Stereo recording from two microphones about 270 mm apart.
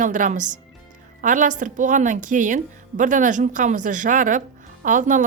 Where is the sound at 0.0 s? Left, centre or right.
Right.